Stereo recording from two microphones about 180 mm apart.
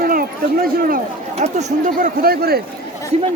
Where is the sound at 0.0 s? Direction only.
55° right (ahead or behind).